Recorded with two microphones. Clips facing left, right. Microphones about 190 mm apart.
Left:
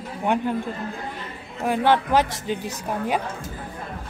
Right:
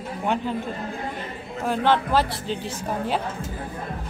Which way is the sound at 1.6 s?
15° left (ahead or behind).